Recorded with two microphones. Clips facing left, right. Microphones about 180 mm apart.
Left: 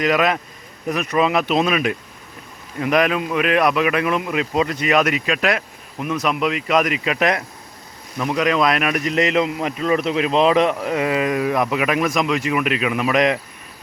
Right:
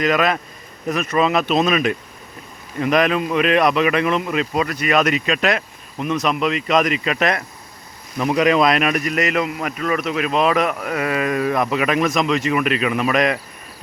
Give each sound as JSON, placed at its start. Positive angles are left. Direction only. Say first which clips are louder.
{"t": 0.0, "sound": "speech", "louder": "even", "side_deg": 15}
{"t": 4.5, "sound": "speech", "louder": "left 1 dB", "side_deg": 20}
{"t": 8.3, "sound": "speech", "louder": "right 3 dB", "side_deg": -5}
{"t": 9.0, "sound": "a man's voice", "louder": "left 2 dB", "side_deg": 25}